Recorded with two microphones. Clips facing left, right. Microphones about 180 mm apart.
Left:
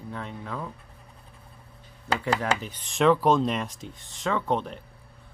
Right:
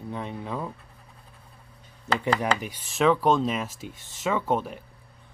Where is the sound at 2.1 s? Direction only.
10° left (ahead or behind).